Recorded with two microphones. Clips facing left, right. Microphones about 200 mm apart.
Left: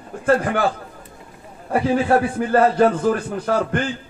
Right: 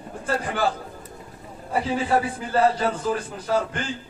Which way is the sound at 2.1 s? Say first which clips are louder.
Left 4 dB; 55° left (ahead or behind).